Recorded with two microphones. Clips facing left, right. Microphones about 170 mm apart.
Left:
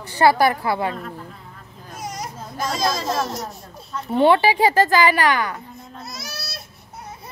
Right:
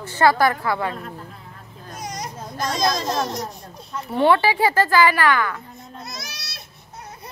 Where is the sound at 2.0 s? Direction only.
5° left (ahead or behind).